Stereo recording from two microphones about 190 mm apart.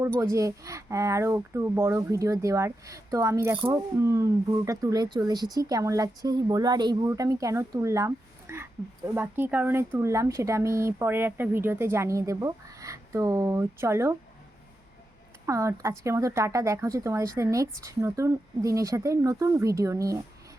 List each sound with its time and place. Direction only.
0.2 s speech: 15° right (ahead or behind)
15.4 s speech: 15° right (ahead or behind)